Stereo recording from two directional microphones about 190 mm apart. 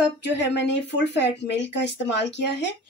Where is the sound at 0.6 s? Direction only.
65° left (ahead or behind).